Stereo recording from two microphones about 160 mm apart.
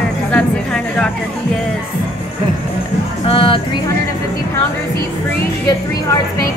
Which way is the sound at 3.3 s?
35° left (ahead or behind).